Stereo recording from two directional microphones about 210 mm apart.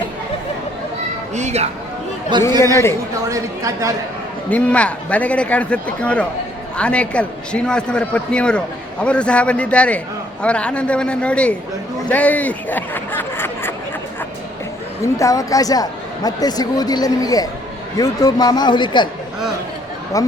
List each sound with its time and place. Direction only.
1.3 s speech: 35° right (ahead or behind)
2.3 s speech: 20° right (ahead or behind)
4.4 s a man's voice: 5° left (ahead or behind)
15.0 s a man's voice: 15° left (ahead or behind)
20.1 s speech: 15° left (ahead or behind)